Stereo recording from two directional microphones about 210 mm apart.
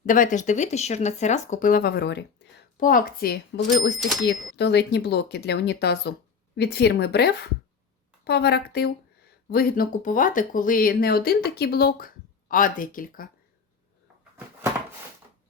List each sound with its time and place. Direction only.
0.0 s speech: 40° left (ahead or behind)
2.8 s speech: 40° left (ahead or behind)